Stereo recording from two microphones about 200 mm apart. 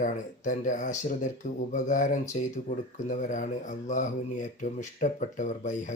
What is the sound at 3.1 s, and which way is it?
Speech, 40° left (ahead or behind).